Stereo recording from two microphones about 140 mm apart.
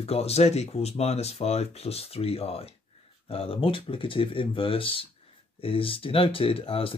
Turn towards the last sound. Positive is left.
turn(degrees=40)  # may be behind; listen again after turning